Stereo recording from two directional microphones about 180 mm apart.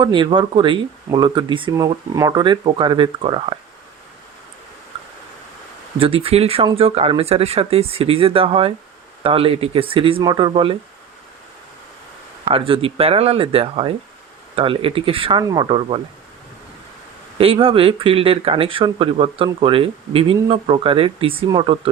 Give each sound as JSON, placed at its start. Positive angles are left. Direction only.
{"t": 0.0, "sound": "speech", "side_deg": -25}
{"t": 6.0, "sound": "speech", "side_deg": -30}
{"t": 12.5, "sound": "speech", "side_deg": -30}
{"t": 17.3, "sound": "speech", "side_deg": -30}